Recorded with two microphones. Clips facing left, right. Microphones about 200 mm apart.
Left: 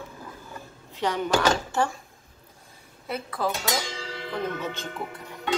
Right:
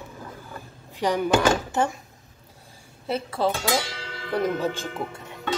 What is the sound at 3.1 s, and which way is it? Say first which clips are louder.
Speech: right 4 dB; 30° right (ahead or behind).